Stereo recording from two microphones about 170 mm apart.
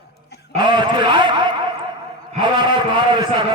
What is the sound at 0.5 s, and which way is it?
Radio, 25° right (ahead or behind).